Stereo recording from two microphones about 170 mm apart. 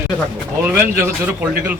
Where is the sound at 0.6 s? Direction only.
15° right (ahead or behind).